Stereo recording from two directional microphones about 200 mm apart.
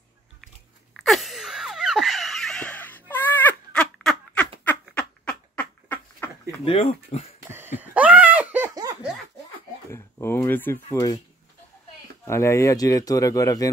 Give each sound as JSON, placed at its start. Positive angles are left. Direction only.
{"t": 0.9, "sound": "gasp", "side_deg": 0}
{"t": 6.6, "sound": "speech", "side_deg": 30}
{"t": 7.5, "sound": "laughter", "side_deg": -10}
{"t": 9.8, "sound": "speech", "side_deg": 10}
{"t": 12.3, "sound": "speech", "side_deg": 15}